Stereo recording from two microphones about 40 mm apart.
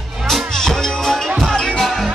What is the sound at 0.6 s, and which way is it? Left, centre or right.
Music, centre.